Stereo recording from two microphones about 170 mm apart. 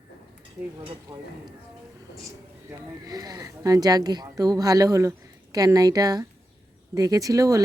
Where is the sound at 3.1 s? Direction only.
20° right (ahead or behind).